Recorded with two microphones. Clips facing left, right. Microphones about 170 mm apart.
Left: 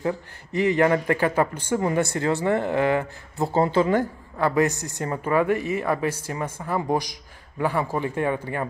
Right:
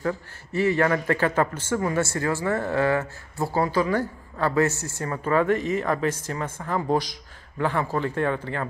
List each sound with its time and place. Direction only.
0.0 s a man's voice: 15° left (ahead or behind)